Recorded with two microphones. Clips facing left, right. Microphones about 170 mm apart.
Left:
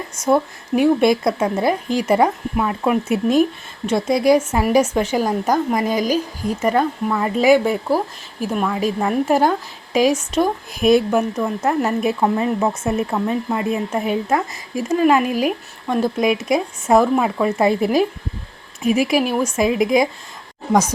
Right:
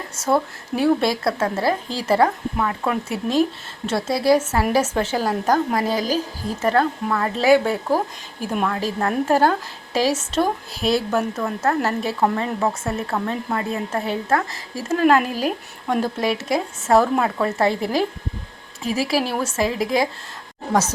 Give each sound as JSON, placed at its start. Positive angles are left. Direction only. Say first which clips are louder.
{"t": 0.2, "sound": "a woman's voice", "louder": "left 3 dB", "side_deg": 15}
{"t": 17.7, "sound": "speech", "louder": "left 5 dB", "side_deg": 20}